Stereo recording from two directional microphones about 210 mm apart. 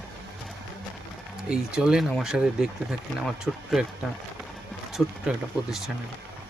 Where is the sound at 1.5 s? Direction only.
5° right (ahead or behind).